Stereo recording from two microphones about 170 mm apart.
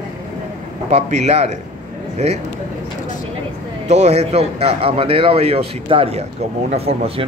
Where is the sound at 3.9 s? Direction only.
40° right (ahead or behind).